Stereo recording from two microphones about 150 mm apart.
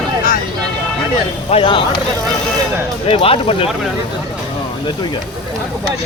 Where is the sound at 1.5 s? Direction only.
35° left (ahead or behind).